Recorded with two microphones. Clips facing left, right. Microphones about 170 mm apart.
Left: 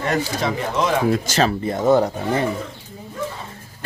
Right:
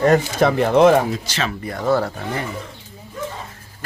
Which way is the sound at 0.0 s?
50° right (ahead or behind).